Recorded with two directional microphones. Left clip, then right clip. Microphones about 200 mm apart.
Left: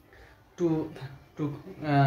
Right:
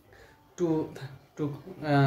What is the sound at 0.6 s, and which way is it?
Speech, 15° right (ahead or behind).